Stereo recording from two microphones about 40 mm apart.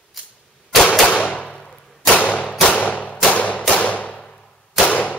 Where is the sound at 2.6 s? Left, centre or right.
Left.